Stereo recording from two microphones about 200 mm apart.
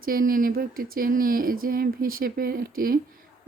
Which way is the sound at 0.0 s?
45° right (ahead or behind).